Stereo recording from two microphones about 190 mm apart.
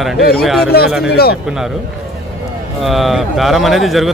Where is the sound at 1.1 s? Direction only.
55° left (ahead or behind).